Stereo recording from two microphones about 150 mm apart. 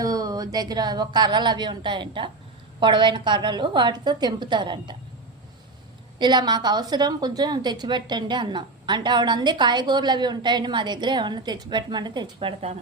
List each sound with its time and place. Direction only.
0.0 s a woman's voice: 25° right (ahead or behind)
6.1 s a woman's voice: 30° right (ahead or behind)